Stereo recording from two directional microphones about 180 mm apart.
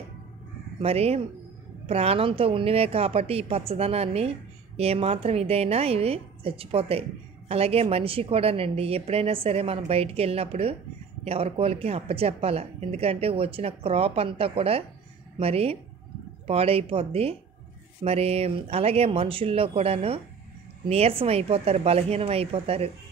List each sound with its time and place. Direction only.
0.7 s a woman's voice: 35° right (ahead or behind)